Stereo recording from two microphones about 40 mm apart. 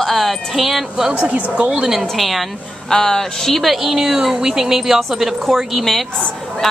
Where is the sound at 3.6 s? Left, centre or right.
Centre.